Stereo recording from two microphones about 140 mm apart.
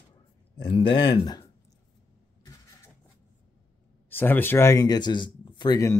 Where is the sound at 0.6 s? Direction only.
40° left (ahead or behind).